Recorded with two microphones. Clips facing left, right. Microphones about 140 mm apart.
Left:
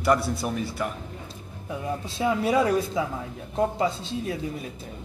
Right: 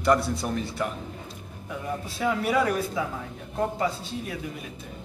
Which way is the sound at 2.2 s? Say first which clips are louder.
Left 2 dB; 25° left (ahead or behind).